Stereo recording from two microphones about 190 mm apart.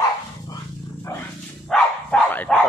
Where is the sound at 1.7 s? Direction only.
5° left (ahead or behind).